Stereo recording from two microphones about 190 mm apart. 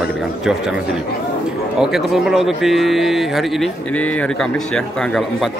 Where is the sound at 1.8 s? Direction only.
Centre (ahead or behind).